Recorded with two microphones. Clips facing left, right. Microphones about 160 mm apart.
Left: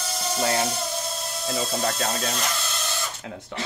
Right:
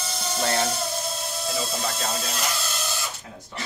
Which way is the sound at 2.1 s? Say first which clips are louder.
Left 2 dB; centre (ahead or behind).